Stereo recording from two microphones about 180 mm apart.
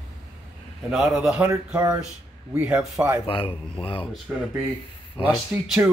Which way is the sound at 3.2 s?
30° left (ahead or behind).